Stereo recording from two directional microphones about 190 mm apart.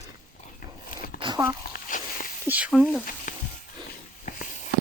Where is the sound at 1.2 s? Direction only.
25° right (ahead or behind).